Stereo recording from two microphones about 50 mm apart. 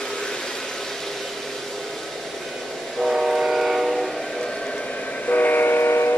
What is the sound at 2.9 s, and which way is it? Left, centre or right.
Train, centre.